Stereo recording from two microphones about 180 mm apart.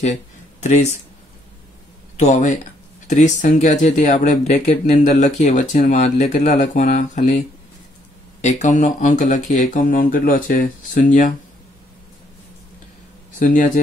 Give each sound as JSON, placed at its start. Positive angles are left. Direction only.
{"t": 0.6, "sound": "speech", "side_deg": 40}
{"t": 2.1, "sound": "speech", "side_deg": 40}
{"t": 8.4, "sound": "speech", "side_deg": 40}